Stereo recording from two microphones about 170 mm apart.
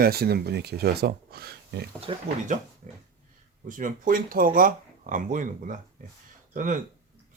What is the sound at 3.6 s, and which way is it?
Speech, 50° right (ahead or behind).